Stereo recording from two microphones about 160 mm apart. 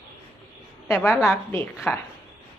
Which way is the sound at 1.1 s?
Centre (ahead or behind).